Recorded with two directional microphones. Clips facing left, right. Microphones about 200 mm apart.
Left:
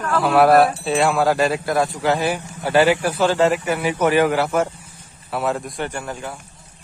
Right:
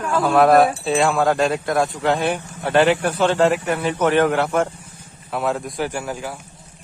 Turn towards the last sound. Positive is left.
turn(degrees=-5)  # may be behind; listen again after turning